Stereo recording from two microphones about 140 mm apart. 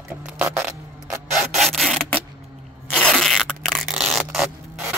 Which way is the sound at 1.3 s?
Centre (ahead or behind).